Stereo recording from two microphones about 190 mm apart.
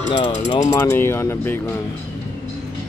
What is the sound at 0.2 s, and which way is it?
Speech, 30° left (ahead or behind).